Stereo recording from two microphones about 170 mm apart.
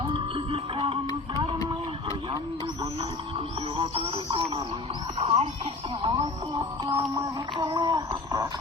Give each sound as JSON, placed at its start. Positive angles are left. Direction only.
{"t": 0.0, "sound": "music", "side_deg": -30}
{"t": 3.8, "sound": "a man's voice", "side_deg": -30}